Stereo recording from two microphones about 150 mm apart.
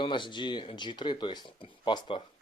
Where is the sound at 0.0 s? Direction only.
30° left (ahead or behind).